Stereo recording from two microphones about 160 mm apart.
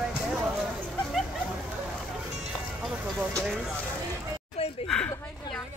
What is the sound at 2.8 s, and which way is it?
Speech, 5° right (ahead or behind).